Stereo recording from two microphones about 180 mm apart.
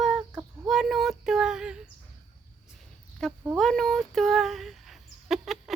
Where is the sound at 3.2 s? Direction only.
Centre (ahead or behind).